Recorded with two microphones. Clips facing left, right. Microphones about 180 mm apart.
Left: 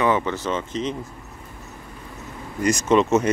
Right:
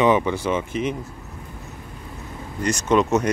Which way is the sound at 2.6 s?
5° left (ahead or behind).